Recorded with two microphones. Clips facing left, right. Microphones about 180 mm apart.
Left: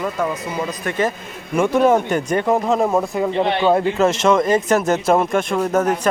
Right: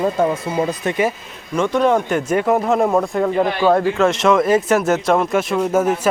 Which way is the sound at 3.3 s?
25° left (ahead or behind).